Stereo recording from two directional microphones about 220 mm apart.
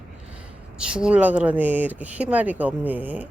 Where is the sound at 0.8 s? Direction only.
5° right (ahead or behind).